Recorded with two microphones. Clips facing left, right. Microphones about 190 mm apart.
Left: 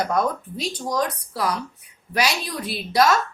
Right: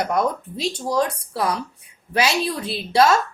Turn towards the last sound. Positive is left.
turn(degrees=-30)  # may be behind; listen again after turning